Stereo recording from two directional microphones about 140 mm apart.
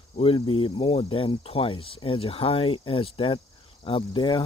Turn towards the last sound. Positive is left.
turn(degrees=35)  # may be behind; listen again after turning